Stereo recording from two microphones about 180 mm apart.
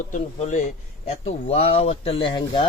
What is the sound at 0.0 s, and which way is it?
Speech, 40° left (ahead or behind).